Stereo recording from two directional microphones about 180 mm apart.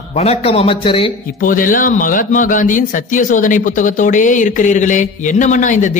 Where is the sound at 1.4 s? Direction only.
50° left (ahead or behind).